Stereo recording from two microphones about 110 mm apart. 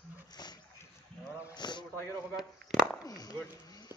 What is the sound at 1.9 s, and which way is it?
Speech, 20° left (ahead or behind).